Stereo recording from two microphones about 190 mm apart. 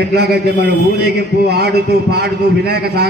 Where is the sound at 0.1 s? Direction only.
60° right (ahead or behind).